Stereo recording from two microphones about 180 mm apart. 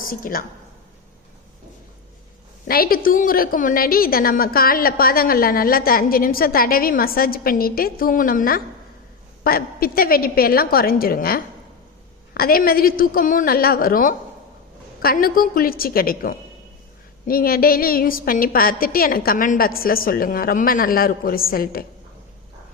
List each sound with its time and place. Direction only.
0.1 s a woman's voice: 50° left (ahead or behind)
2.6 s a woman's voice: 55° left (ahead or behind)